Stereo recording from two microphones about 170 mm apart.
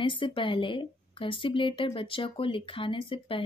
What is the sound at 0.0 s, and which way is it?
Speech, 30° left (ahead or behind).